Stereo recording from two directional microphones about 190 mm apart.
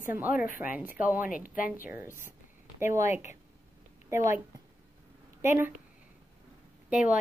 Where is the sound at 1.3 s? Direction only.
45° left (ahead or behind).